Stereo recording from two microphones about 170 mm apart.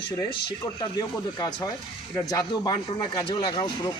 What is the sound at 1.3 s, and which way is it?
Speech, 25° left (ahead or behind).